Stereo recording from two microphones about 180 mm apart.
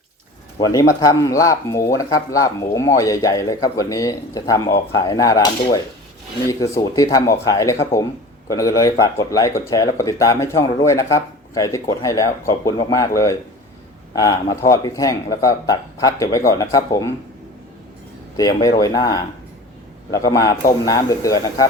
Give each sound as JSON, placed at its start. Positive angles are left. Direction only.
{"t": 0.6, "sound": "speech", "side_deg": 20}
{"t": 18.3, "sound": "speech", "side_deg": 20}